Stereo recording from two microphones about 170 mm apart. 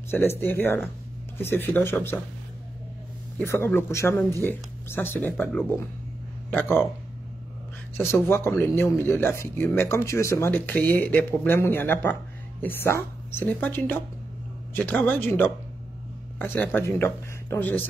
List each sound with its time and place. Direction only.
0.1 s speech: 15° left (ahead or behind)
3.3 s speech: 15° left (ahead or behind)
8.1 s speech: 15° left (ahead or behind)